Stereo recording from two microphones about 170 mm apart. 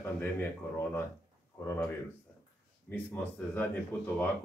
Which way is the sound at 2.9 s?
10° left (ahead or behind).